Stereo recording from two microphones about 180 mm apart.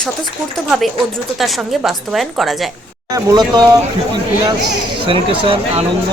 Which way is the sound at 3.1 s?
20° right (ahead or behind).